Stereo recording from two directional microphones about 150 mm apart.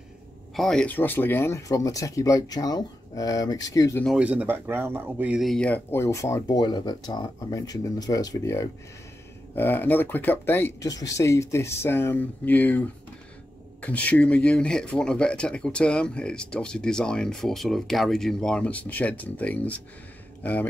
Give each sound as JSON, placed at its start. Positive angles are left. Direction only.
{"t": 0.6, "sound": "speech", "side_deg": 5}
{"t": 4.2, "sound": "speech", "side_deg": -10}
{"t": 5.4, "sound": "speech", "side_deg": 5}